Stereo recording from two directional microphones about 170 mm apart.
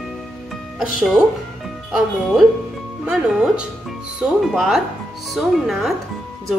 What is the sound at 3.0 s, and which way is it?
A woman's voice, 5° right (ahead or behind).